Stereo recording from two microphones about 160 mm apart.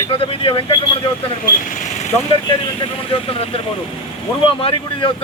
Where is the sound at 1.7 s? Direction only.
55° left (ahead or behind).